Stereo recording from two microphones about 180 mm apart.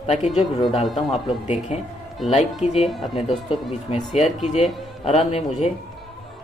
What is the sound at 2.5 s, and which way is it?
Speech, centre (ahead or behind).